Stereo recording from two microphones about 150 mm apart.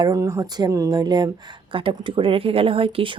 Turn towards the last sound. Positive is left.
turn(degrees=-35)  # may be behind; listen again after turning